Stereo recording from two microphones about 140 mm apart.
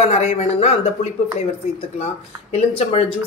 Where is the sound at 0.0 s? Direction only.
45° left (ahead or behind).